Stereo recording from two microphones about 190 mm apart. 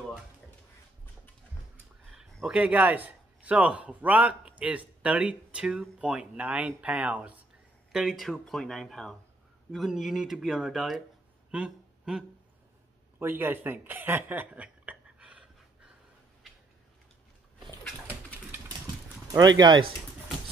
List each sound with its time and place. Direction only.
2.1 s speech: centre (ahead or behind)
18.0 s pigeon: 10° right (ahead or behind)
19.3 s speech: 20° right (ahead or behind)